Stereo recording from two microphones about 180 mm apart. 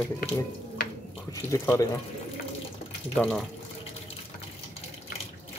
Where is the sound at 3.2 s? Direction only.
Centre (ahead or behind).